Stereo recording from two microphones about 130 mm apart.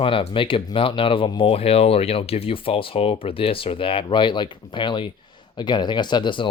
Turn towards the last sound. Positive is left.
turn(degrees=35)  # may be behind; listen again after turning